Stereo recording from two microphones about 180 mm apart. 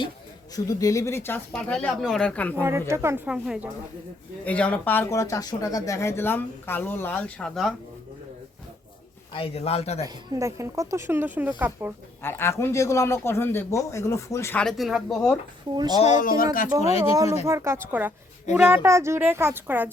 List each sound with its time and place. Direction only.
0.5 s speech: 20° left (ahead or behind)
1.5 s speech: centre (ahead or behind)
2.6 s speech: 15° right (ahead or behind)
4.4 s speech: 5° left (ahead or behind)
9.3 s a man's voice: 30° left (ahead or behind)
10.0 s speech: 15° right (ahead or behind)
12.2 s speech: 15° left (ahead or behind)
14.6 s speech: centre (ahead or behind)
15.7 s speech: 25° right (ahead or behind)
16.0 s speech: 40° left (ahead or behind)
16.8 s a man's voice: 35° left (ahead or behind)
17.4 s speech: 15° right (ahead or behind)